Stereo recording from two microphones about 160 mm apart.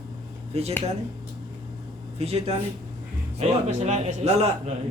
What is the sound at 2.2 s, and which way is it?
Speech, 40° right (ahead or behind).